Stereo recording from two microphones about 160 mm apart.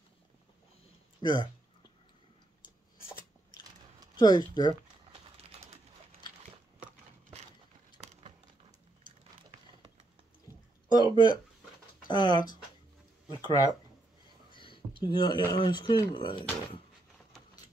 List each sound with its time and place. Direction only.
1.2 s speech: 25° left (ahead or behind)
4.2 s speech: 25° left (ahead or behind)
5.1 s a sound: 40° right (ahead or behind)
11.0 s speech: 30° left (ahead or behind)
14.5 s a sound: 30° left (ahead or behind)
15.0 s speech: 30° left (ahead or behind)